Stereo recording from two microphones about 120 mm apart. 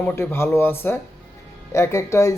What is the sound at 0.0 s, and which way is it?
Speech, 20° left (ahead or behind).